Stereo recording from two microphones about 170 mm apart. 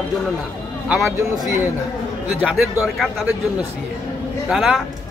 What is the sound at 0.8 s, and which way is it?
A man's voice, centre (ahead or behind).